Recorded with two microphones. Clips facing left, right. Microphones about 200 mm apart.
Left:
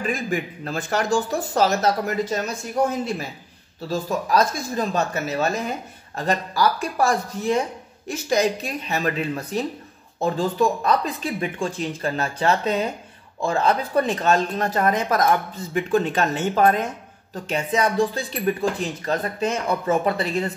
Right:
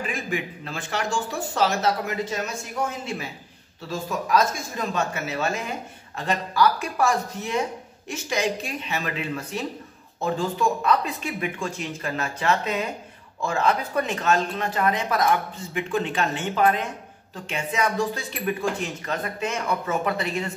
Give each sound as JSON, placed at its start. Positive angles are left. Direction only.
{"t": 0.0, "sound": "speech", "side_deg": 40}